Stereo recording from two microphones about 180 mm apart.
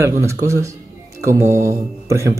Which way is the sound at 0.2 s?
15° right (ahead or behind).